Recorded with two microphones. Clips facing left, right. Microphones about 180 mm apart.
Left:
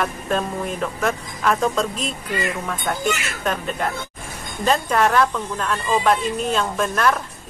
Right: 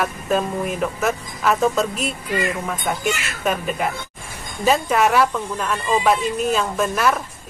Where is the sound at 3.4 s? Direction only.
5° right (ahead or behind).